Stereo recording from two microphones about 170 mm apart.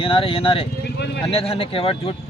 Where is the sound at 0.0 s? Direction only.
30° left (ahead or behind).